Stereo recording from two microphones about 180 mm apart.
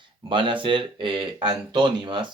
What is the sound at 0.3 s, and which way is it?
Speech, 30° right (ahead or behind).